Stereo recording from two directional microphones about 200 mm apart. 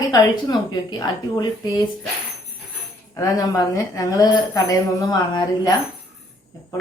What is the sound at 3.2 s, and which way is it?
Speech, 20° left (ahead or behind).